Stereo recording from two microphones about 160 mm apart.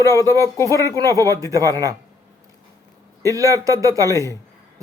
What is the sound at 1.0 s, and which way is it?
Speech, 20° right (ahead or behind).